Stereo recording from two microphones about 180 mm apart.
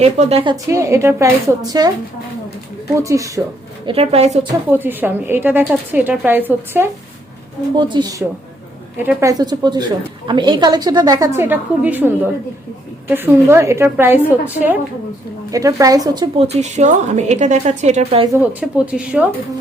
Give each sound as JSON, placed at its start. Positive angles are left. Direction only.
{"t": 0.0, "sound": "a woman's voice", "side_deg": -35}
{"t": 0.5, "sound": "a woman's voice", "side_deg": -15}
{"t": 2.9, "sound": "a woman's voice", "side_deg": -15}
{"t": 3.8, "sound": "a woman's voice", "side_deg": -35}
{"t": 4.7, "sound": "a woman's voice", "side_deg": -10}
{"t": 7.8, "sound": "a woman's voice", "side_deg": -25}
{"t": 16.5, "sound": "a woman's voice", "side_deg": -40}
{"t": 18.3, "sound": "a woman's voice", "side_deg": -5}